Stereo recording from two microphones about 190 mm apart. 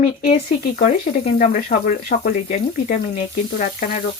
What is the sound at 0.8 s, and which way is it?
Speech, 40° left (ahead or behind).